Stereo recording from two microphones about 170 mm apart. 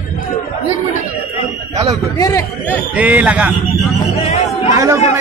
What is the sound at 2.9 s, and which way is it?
Speech, 10° right (ahead or behind).